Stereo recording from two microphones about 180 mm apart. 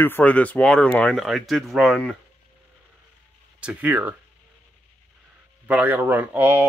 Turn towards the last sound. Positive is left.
turn(degrees=-10)  # may be behind; listen again after turning